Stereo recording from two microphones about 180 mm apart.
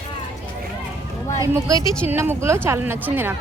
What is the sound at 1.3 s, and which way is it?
Speech, 20° right (ahead or behind).